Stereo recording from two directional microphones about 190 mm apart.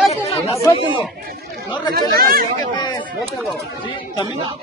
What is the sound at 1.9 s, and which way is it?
Speech, 50° right (ahead or behind).